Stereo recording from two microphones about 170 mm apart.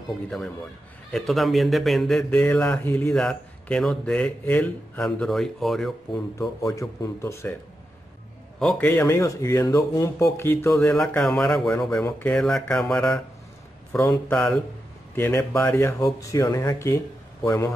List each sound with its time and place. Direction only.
1.1 s a man's voice: centre (ahead or behind)
6.6 s speech: 20° left (ahead or behind)
8.5 s a man's voice: 5° left (ahead or behind)